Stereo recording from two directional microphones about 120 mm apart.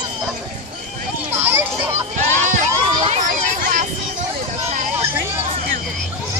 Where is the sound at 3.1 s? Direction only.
90° right.